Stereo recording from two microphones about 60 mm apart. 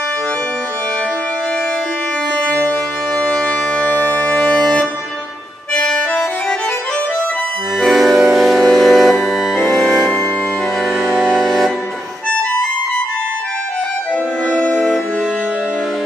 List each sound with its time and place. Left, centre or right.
3.2 s music: centre
3.7 s music: left
4.6 s music: centre
5.8 s accordion: centre
7.8 s music: centre
14.5 s music: centre